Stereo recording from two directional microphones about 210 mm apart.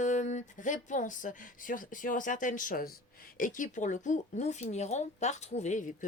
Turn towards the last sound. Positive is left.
turn(degrees=35)  # may be behind; listen again after turning